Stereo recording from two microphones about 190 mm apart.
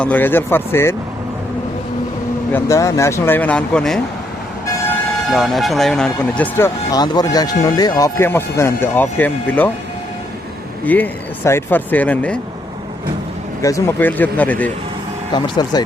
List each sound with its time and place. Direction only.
0.0 s speech: 10° left (ahead or behind)
2.5 s speech: 15° left (ahead or behind)
5.3 s speech: centre (ahead or behind)
6.9 s speech: 20° left (ahead or behind)
10.8 s speech: 10° left (ahead or behind)
13.6 s speech: 15° left (ahead or behind)
15.3 s speech: 25° left (ahead or behind)